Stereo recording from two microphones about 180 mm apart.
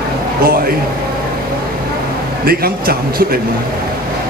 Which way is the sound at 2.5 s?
60° right (ahead or behind).